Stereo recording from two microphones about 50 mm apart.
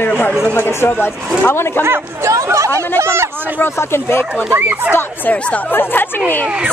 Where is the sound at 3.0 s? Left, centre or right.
Right.